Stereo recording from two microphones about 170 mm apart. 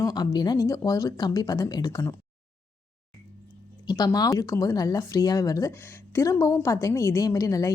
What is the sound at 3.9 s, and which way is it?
Speech, 20° left (ahead or behind).